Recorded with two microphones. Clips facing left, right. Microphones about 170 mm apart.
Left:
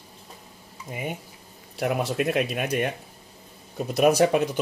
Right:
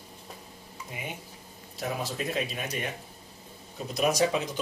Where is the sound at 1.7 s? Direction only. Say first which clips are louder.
Left 8 dB; 65° left (ahead or behind).